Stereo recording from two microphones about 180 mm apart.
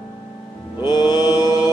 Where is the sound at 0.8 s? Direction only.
25° left (ahead or behind).